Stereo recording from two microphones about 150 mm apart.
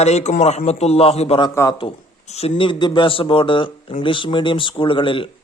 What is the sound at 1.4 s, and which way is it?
Speech, 20° left (ahead or behind).